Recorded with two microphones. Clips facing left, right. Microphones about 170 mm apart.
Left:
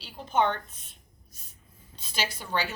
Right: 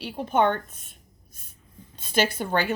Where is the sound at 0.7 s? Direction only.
50° right (ahead or behind).